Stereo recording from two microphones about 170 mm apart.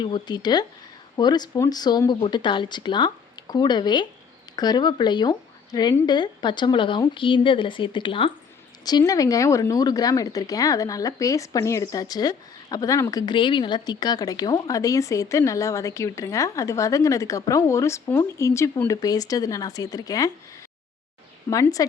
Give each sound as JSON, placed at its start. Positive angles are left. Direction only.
{"t": 0.0, "sound": "speech", "side_deg": 25}
{"t": 21.5, "sound": "speech", "side_deg": 20}